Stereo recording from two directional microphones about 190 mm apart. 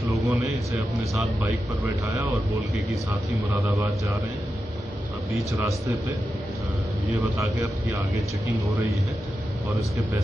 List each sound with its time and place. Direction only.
0.0 s a sound: 15° right (ahead or behind)
1.4 s speech: 15° right (ahead or behind)
5.3 s speech: 15° right (ahead or behind)
7.2 s speech: 15° right (ahead or behind)